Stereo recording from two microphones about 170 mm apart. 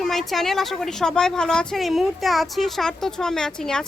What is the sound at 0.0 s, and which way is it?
A woman's voice, centre (ahead or behind).